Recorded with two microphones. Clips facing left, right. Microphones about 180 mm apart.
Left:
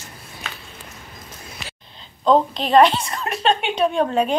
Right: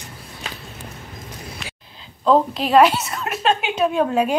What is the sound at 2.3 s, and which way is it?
A woman's voice, 5° right (ahead or behind).